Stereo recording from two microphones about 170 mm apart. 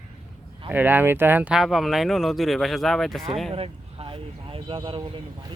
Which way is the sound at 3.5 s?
35° right (ahead or behind).